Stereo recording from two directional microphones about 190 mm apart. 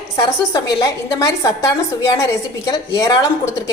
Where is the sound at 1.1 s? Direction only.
15° left (ahead or behind).